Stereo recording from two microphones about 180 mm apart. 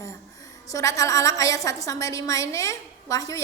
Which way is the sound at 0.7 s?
20° left (ahead or behind).